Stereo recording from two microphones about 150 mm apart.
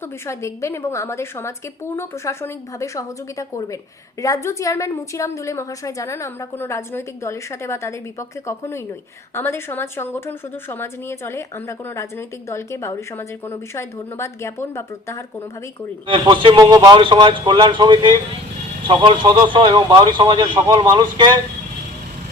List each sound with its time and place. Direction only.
0.3 s a woman's voice: 20° left (ahead or behind)
12.5 s a woman's voice: 20° left (ahead or behind)
16.0 s a man's voice: 30° right (ahead or behind)